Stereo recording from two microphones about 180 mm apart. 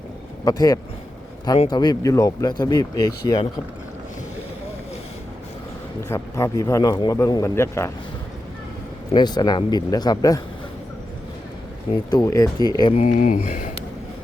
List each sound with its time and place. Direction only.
0.4 s speech: 20° left (ahead or behind)
6.1 s a man's voice: 15° left (ahead or behind)
9.1 s speech: 25° left (ahead or behind)
12.1 s speech: 20° left (ahead or behind)
13.0 s speech: 45° left (ahead or behind)